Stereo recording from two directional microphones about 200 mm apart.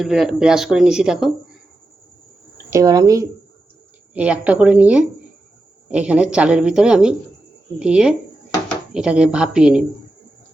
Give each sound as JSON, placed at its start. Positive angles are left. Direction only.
{"t": 0.0, "sound": "speech", "side_deg": 0}
{"t": 2.6, "sound": "a woman's voice", "side_deg": -15}
{"t": 4.1, "sound": "a woman's voice", "side_deg": -5}